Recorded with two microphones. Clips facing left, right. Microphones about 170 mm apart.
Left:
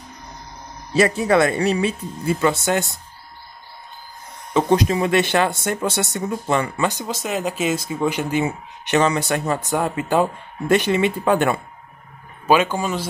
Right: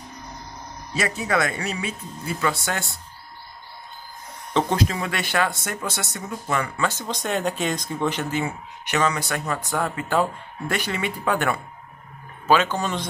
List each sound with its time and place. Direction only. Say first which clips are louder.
0.9 s speech: left 8 dB; 30° left (ahead or behind)
4.6 s speech: left 5 dB; 15° left (ahead or behind)
6.9 s speech: left 2 dB; 10° left (ahead or behind)
12.4 s speech: left 3 dB; 10° left (ahead or behind)